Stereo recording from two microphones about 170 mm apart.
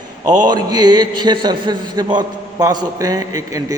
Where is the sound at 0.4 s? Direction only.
25° right (ahead or behind).